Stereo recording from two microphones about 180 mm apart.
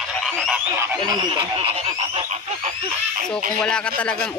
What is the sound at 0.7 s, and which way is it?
Speech, 20° right (ahead or behind).